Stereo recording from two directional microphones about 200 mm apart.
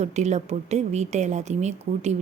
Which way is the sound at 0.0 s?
35° right (ahead or behind).